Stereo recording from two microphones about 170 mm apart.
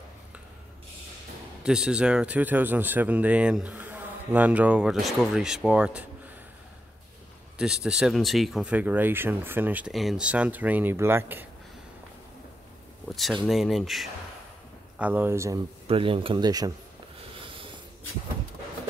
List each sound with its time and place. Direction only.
1.6 s speech: 5° right (ahead or behind)
7.5 s speech: 5° right (ahead or behind)
13.1 s speech: centre (ahead or behind); by 15.6 s 15° right (ahead or behind)
15.9 s speech: 30° right (ahead or behind)
17.4 s a sound: 30° right (ahead or behind)